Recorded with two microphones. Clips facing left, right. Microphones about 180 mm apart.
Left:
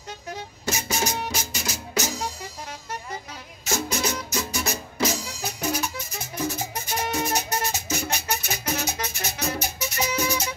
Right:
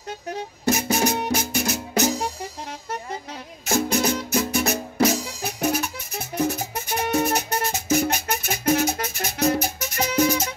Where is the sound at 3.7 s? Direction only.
55° right (ahead or behind).